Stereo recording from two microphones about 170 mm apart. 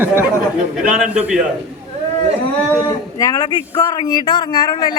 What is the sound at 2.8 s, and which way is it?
Speech, 20° left (ahead or behind).